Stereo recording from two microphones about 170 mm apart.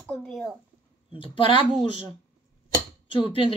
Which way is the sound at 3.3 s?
30° left (ahead or behind).